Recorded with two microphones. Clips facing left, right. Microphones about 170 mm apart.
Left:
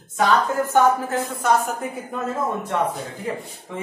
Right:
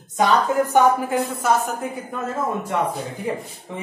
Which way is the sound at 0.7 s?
10° right (ahead or behind).